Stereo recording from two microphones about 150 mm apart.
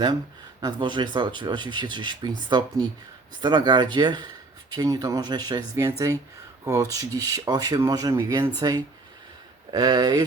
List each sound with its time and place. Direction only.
0.6 s speech: 30° right (ahead or behind)